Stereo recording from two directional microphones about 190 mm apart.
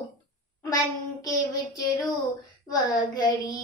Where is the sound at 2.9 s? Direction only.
20° left (ahead or behind).